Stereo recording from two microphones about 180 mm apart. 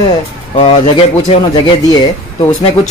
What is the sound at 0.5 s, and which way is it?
Speech, 30° left (ahead or behind).